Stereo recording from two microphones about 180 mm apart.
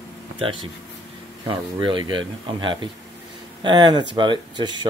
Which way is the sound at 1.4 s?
25° right (ahead or behind).